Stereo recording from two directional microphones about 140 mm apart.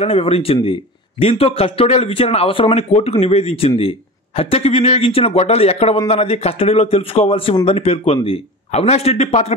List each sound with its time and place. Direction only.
0.0 s a man's voice: 45° left (ahead or behind)